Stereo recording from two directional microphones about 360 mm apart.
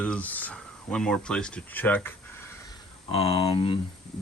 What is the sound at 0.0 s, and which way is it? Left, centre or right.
Speech, centre.